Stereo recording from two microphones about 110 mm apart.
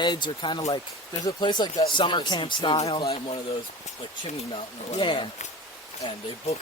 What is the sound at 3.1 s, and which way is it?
Speech, 60° left (ahead or behind).